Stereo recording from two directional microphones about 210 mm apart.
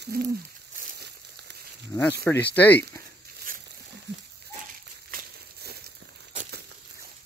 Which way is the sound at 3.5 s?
40° right (ahead or behind).